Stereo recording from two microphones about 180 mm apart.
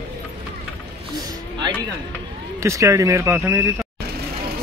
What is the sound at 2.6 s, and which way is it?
Speech, 15° right (ahead or behind).